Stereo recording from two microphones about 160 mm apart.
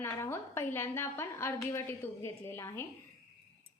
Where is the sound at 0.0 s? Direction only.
15° left (ahead or behind).